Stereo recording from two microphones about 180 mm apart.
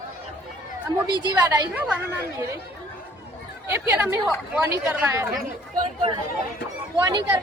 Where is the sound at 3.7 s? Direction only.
15° right (ahead or behind).